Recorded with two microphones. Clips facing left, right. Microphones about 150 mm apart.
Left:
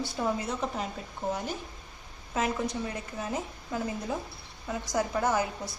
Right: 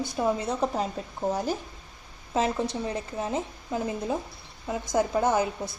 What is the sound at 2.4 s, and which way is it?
A woman's voice, 30° right (ahead or behind).